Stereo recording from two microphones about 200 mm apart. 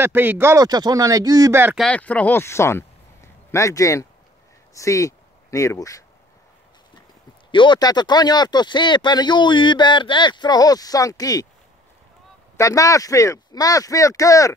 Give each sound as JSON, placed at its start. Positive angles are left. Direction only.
{"t": 0.0, "sound": "speech", "side_deg": -10}
{"t": 1.8, "sound": "speech", "side_deg": 5}
{"t": 7.5, "sound": "speech", "side_deg": 25}
{"t": 12.5, "sound": "speech", "side_deg": 15}